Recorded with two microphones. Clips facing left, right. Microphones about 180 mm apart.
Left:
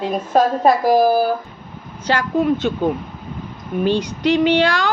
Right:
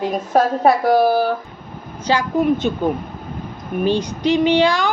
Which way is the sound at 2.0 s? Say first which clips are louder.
Right 1 dB; 15° right (ahead or behind).